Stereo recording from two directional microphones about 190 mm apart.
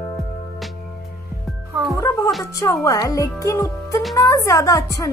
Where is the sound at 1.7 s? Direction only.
15° right (ahead or behind).